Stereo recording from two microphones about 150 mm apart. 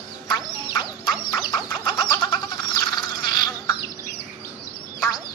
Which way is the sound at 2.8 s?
30° left (ahead or behind).